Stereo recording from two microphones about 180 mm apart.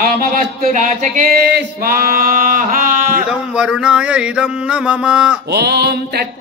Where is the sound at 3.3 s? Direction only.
5° right (ahead or behind).